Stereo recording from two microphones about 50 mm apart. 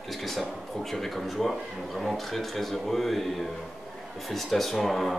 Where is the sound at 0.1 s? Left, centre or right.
Centre.